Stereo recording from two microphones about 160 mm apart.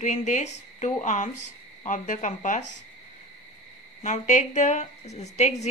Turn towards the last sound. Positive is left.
turn(degrees=45)  # may be behind; listen again after turning